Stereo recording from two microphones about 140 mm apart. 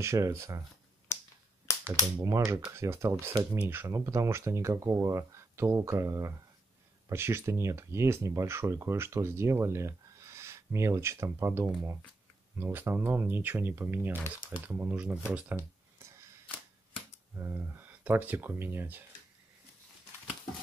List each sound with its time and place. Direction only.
0.0 s speech: 20° right (ahead or behind)
1.1 s finger snapping: 20° left (ahead or behind)
2.2 s speech: 20° right (ahead or behind)
15.3 s a sound: 10° right (ahead or behind)
17.4 s speech: 15° right (ahead or behind)